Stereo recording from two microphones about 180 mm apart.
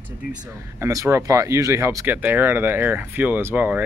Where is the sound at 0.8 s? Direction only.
15° right (ahead or behind).